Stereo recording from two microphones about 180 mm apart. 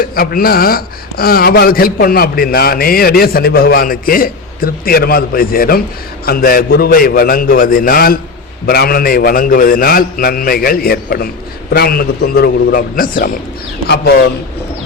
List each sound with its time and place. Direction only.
0.2 s speech: 55° left (ahead or behind)
13.8 s speech: 65° left (ahead or behind)